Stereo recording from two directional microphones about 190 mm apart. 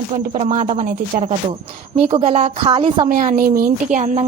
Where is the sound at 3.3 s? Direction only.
50° right (ahead or behind).